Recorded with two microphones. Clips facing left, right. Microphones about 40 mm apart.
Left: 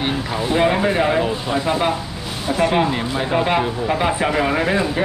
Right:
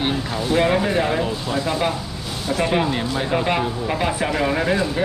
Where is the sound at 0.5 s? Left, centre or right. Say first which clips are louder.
Left 1 dB; centre.